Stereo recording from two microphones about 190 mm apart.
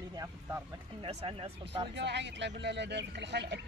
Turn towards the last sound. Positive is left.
turn(degrees=-65)  # may be behind; listen again after turning